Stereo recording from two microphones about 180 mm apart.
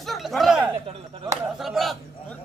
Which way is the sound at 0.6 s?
25° right (ahead or behind).